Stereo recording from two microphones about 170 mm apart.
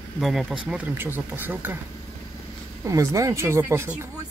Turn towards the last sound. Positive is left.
turn(degrees=-15)  # may be behind; listen again after turning